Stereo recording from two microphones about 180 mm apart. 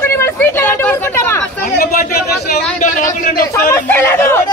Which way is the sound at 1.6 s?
55° left (ahead or behind).